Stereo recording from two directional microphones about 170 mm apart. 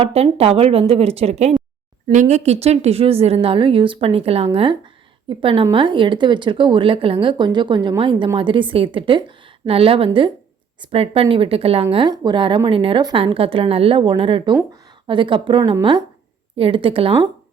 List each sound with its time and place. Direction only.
0.0 s speech: 35° right (ahead or behind)